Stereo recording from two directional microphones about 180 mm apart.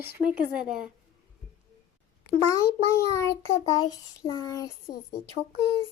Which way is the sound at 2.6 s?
15° left (ahead or behind).